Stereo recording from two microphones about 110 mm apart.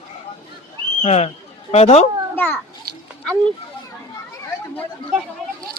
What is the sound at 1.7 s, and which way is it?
Speech, 70° left (ahead or behind).